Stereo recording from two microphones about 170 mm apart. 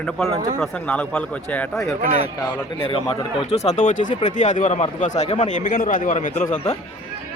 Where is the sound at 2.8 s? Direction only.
30° left (ahead or behind).